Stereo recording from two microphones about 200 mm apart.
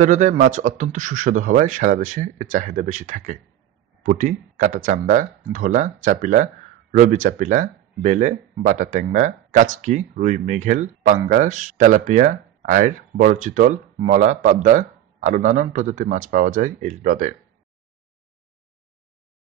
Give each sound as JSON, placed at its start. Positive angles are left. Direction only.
{"t": 0.0, "sound": "speech", "side_deg": -40}